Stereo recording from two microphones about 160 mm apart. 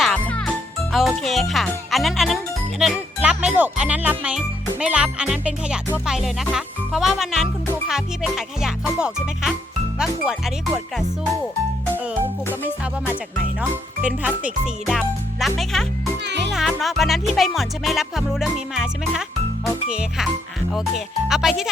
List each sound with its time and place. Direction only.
0.0 s music: 5° left (ahead or behind)
0.9 s speech: centre (ahead or behind)
13.6 s speech: 10° right (ahead or behind)
16.2 s music: 90° right
16.5 s speech: centre (ahead or behind)